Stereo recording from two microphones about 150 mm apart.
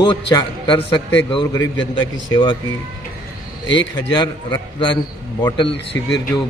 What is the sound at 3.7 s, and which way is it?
A man's voice, 30° left (ahead or behind).